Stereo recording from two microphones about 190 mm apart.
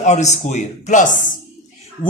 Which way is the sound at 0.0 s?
35° left (ahead or behind).